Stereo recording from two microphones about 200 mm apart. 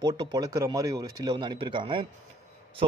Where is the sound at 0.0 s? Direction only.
20° right (ahead or behind).